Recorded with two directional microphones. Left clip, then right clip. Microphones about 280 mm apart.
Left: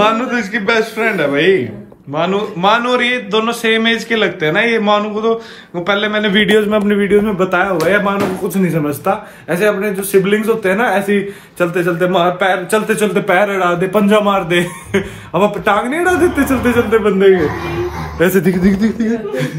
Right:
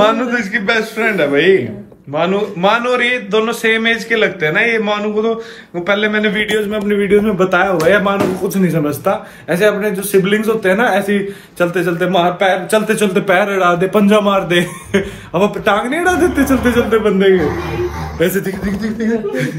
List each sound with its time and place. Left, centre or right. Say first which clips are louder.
0.0 s a man's voice: right 1 dB; centre
6.6 s a man's voice: left 3 dB; left
7.0 s speech: even; centre
18.4 s a man's voice: left 6 dB; left
18.9 s a man's voice: right 1 dB; centre